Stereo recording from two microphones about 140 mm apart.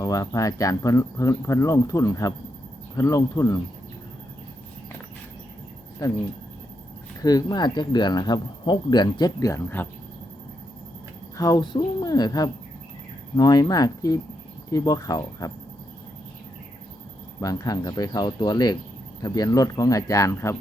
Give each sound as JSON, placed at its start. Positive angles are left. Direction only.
{"t": 0.0, "sound": "speech", "side_deg": 25}
{"t": 6.0, "sound": "speech", "side_deg": 25}
{"t": 7.2, "sound": "speech", "side_deg": 25}
{"t": 11.3, "sound": "speech", "side_deg": 25}
{"t": 17.4, "sound": "speech", "side_deg": 25}